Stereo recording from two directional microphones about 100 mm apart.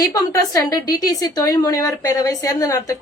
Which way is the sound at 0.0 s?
35° left (ahead or behind).